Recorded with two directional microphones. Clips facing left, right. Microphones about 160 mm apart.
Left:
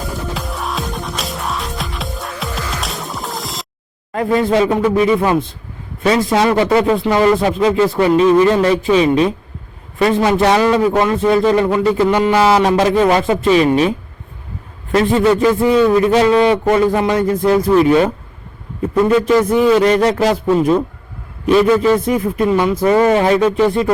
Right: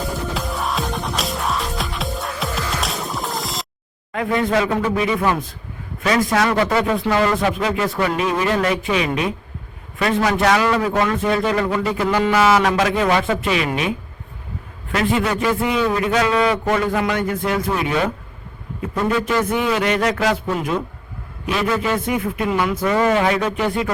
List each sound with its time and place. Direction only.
0.3 s music: centre (ahead or behind)
4.3 s a man's voice: 30° left (ahead or behind)
14.9 s a man's voice: 30° left (ahead or behind)
19.2 s a man's voice: 35° left (ahead or behind)